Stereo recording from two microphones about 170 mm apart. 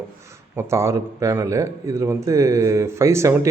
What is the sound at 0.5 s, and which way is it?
Speech, 15° right (ahead or behind).